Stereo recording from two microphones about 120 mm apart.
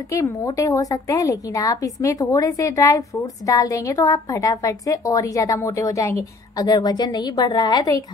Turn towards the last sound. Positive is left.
turn(degrees=35)  # may be behind; listen again after turning